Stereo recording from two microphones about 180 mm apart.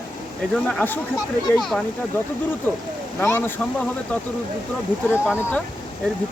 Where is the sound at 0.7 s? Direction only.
5° left (ahead or behind).